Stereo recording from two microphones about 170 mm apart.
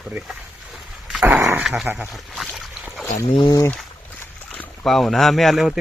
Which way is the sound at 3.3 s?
25° left (ahead or behind).